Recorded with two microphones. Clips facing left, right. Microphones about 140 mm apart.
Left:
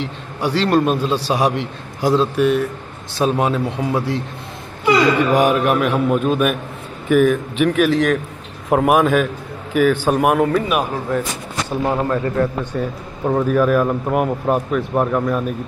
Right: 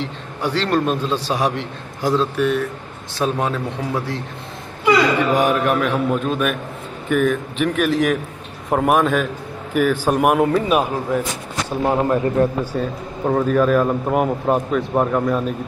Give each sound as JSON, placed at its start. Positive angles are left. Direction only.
{"t": 0.4, "sound": "a man's voice", "side_deg": 10}
{"t": 5.4, "sound": "a man's voice", "side_deg": 10}
{"t": 8.6, "sound": "a man's voice", "side_deg": 5}
{"t": 10.4, "sound": "a man's voice", "side_deg": -25}
{"t": 11.1, "sound": "a man's voice", "side_deg": -10}
{"t": 12.7, "sound": "a man's voice", "side_deg": 0}